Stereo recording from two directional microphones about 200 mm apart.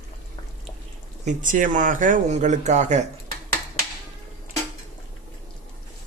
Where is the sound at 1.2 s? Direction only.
40° right (ahead or behind).